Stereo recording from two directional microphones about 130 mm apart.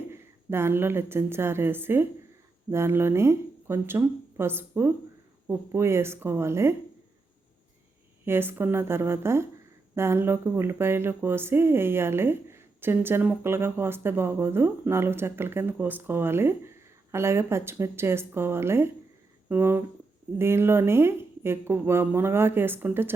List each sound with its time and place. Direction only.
0.1 s a woman's voice: 20° right (ahead or behind)
8.2 s speech: 15° right (ahead or behind)